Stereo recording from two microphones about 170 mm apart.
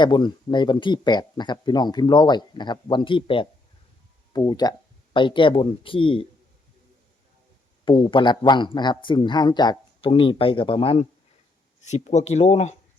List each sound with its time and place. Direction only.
0.0 s speech: 25° left (ahead or behind)
7.9 s speech: 30° left (ahead or behind)
11.8 s speech: 45° left (ahead or behind)